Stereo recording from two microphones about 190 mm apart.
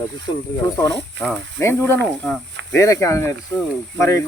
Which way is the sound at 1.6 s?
15° left (ahead or behind).